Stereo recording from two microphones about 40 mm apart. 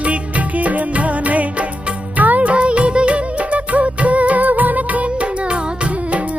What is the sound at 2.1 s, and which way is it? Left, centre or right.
Music of bollywood, right.